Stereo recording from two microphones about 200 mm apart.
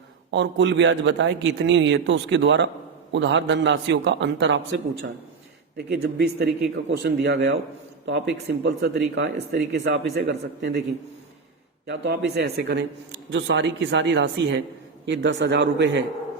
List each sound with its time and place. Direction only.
0.3 s speech: 60° right (ahead or behind)
5.7 s speech: 55° right (ahead or behind)
11.9 s speech: 55° right (ahead or behind)